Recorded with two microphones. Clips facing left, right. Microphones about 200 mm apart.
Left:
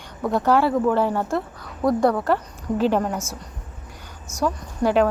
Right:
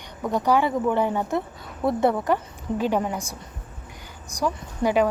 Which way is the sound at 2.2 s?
10° right (ahead or behind).